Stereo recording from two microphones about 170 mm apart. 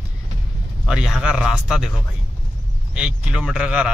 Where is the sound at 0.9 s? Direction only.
5° right (ahead or behind).